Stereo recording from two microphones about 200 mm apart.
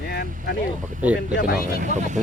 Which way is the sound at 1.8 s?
35° right (ahead or behind).